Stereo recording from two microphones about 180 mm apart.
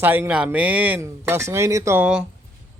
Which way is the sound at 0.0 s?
10° right (ahead or behind).